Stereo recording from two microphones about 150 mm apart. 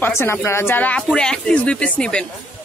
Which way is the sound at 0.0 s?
15° left (ahead or behind).